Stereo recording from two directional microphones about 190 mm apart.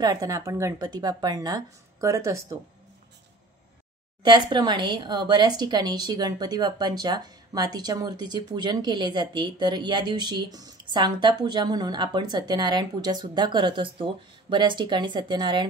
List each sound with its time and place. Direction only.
0.0 s speech: 20° right (ahead or behind)
4.2 s speech: 25° right (ahead or behind)